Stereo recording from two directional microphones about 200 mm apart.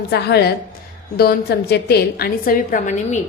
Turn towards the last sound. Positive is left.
turn(degrees=40)  # may be behind; listen again after turning